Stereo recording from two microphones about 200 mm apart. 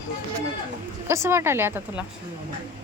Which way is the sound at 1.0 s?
15° right (ahead or behind).